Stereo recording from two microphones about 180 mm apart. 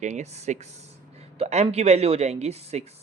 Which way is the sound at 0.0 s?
40° right (ahead or behind).